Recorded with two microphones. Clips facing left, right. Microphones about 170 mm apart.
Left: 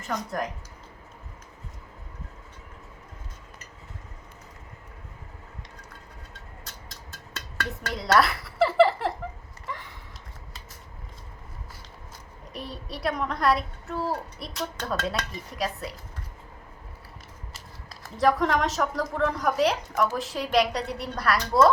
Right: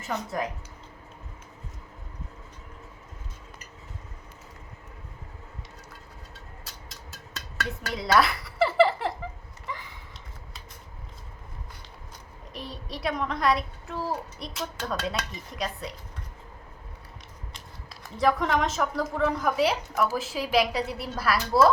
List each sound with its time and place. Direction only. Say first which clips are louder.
0.1 s speech: even; 5° right (ahead or behind)
6.8 s dishes: even; centre (ahead or behind)
9.6 s a sound: even; centre (ahead or behind)
12.5 s speech: left 1 dB; centre (ahead or behind)
17.5 s speech: even; centre (ahead or behind)